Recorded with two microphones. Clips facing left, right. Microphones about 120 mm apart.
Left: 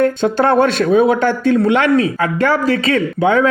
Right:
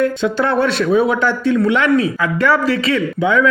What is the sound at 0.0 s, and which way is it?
Speech, 50° left (ahead or behind).